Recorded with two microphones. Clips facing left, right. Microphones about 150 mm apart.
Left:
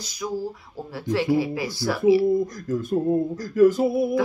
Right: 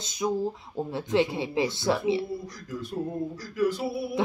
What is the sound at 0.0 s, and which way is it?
Speech, 25° right (ahead or behind).